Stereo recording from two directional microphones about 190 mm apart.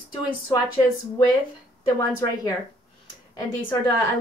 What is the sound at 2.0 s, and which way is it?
Speech, 15° left (ahead or behind).